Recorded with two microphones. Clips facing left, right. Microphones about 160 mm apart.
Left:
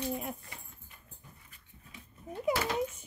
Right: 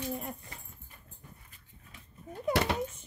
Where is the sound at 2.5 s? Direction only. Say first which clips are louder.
Right 2 dB; 70° right (ahead or behind).